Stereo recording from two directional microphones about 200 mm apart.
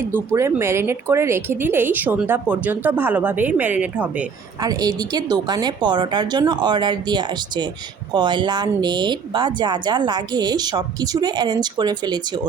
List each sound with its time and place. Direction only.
0.1 s a woman's voice: 10° right (ahead or behind)
4.6 s speech: 20° right (ahead or behind)